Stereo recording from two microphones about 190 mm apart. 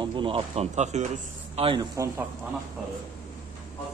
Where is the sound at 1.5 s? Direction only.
25° right (ahead or behind).